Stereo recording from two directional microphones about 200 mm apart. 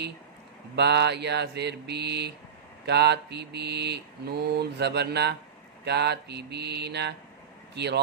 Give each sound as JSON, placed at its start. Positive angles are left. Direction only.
{"t": 0.7, "sound": "mantra", "side_deg": -55}
{"t": 7.7, "sound": "speech", "side_deg": -55}